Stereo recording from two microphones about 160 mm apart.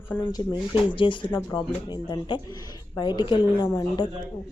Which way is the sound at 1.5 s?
30° left (ahead or behind).